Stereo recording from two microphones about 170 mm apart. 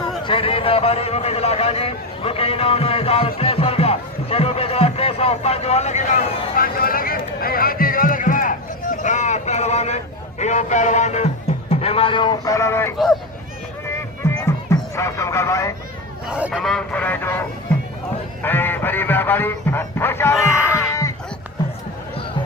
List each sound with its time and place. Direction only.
0.3 s a sound: 30° left (ahead or behind)
10.4 s music: 45° left (ahead or behind)
11.7 s speech: 35° left (ahead or behind); by 12.9 s 15° left (ahead or behind)
13.8 s music: 15° left (ahead or behind)
16.3 s speech: centre (ahead or behind)
18.4 s speech: 10° left (ahead or behind)
20.5 s music: 5° right (ahead or behind)